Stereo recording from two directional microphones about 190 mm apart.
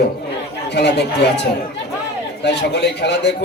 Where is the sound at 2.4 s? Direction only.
65° left (ahead or behind).